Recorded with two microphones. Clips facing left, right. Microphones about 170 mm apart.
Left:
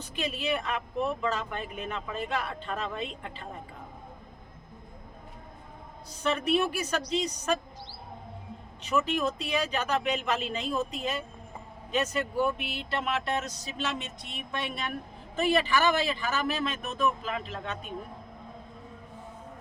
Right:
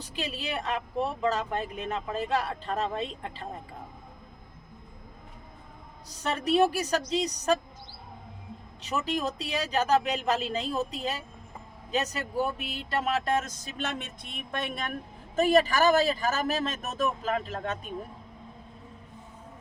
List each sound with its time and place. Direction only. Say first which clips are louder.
0.0 s speech: left 2 dB; 35° right (ahead or behind)
6.1 s speech: left 1 dB; 40° right (ahead or behind)
8.8 s speech: left 2 dB; 35° right (ahead or behind)